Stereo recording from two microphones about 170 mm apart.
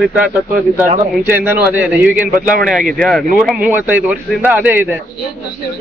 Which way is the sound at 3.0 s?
5° left (ahead or behind).